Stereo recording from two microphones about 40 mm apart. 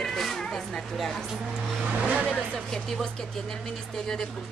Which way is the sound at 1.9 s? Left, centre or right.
Right.